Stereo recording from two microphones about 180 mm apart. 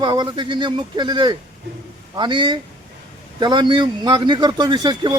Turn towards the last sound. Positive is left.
turn(degrees=-25)  # may be behind; listen again after turning